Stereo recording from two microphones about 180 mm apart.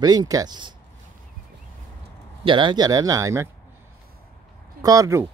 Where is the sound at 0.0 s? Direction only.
20° right (ahead or behind).